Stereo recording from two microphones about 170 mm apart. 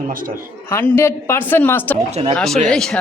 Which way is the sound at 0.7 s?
15° left (ahead or behind).